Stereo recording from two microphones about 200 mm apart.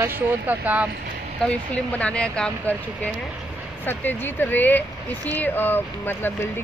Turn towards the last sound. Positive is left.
turn(degrees=10)  # may be behind; listen again after turning